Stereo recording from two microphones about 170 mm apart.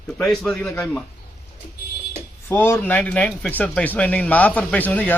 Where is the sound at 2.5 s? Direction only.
15° left (ahead or behind).